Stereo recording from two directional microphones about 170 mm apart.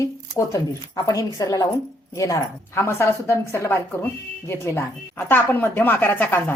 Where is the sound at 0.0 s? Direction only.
20° left (ahead or behind).